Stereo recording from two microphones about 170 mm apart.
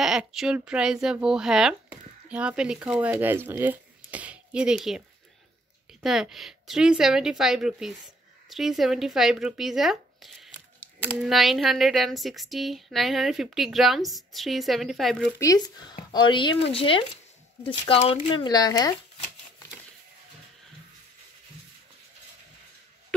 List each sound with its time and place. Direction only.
0.0 s speech: centre (ahead or behind)
6.0 s speech: centre (ahead or behind)
15.3 s speech: 20° left (ahead or behind)